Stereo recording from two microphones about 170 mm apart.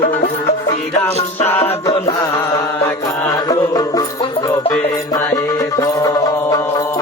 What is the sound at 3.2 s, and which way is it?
Music, 20° left (ahead or behind).